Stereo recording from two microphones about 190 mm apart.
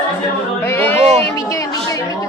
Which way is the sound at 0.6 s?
10° left (ahead or behind).